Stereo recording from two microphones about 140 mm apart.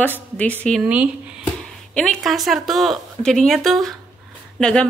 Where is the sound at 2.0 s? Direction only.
Centre (ahead or behind).